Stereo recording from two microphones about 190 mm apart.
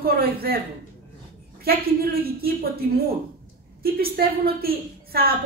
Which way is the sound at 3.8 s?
55° right (ahead or behind).